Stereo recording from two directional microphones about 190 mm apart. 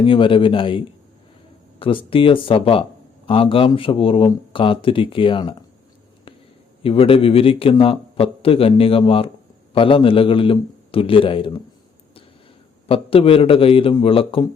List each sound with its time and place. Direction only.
0.0 s speech: 25° left (ahead or behind)
1.8 s speech: 25° left (ahead or behind)
6.8 s speech: 30° left (ahead or behind)
12.9 s speech: 30° left (ahead or behind)